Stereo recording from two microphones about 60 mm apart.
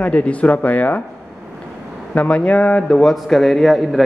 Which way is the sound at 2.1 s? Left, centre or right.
Centre.